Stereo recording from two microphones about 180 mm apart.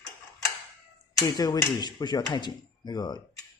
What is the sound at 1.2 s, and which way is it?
Speech, 20° left (ahead or behind).